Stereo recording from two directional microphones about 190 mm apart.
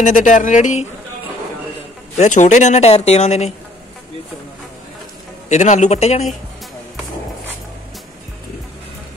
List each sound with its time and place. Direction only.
0.0 s speech: 40° left (ahead or behind)
2.1 s speech: 40° left (ahead or behind)
5.5 s speech: 40° left (ahead or behind)